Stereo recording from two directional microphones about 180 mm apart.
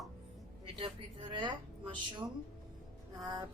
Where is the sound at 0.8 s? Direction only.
25° right (ahead or behind).